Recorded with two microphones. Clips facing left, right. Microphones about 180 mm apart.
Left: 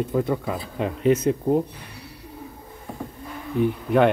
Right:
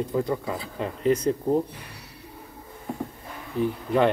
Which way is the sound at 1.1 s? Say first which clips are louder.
Left 2 dB; 5° left (ahead or behind).